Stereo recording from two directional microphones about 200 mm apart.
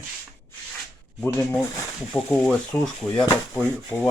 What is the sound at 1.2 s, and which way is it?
Speech, 10° left (ahead or behind).